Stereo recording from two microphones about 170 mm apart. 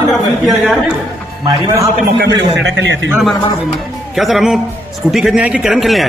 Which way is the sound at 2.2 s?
90° right.